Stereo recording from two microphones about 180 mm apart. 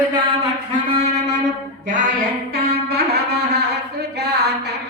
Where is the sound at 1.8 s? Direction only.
45° right (ahead or behind).